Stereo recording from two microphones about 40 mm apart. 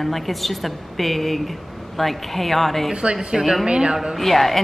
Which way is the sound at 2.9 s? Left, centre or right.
Right.